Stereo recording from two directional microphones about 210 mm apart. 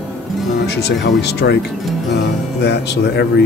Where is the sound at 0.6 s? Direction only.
55° left (ahead or behind).